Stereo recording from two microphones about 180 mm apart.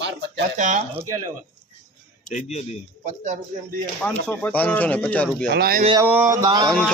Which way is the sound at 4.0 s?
10° left (ahead or behind).